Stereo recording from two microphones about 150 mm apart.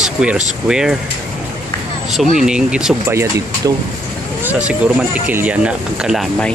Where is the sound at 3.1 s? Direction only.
20° right (ahead or behind).